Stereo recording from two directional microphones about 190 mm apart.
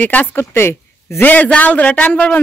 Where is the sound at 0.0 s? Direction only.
10° left (ahead or behind).